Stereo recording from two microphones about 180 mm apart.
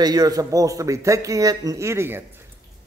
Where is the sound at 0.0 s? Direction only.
20° right (ahead or behind).